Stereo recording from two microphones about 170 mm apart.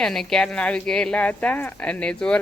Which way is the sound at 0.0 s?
5° left (ahead or behind).